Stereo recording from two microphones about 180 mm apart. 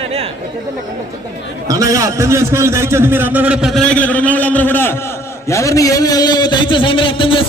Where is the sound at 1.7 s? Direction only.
20° right (ahead or behind).